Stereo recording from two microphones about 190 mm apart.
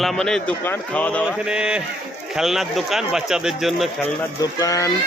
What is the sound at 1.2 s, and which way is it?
Speech, 5° right (ahead or behind).